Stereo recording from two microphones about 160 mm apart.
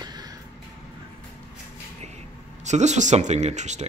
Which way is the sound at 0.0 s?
25° right (ahead or behind).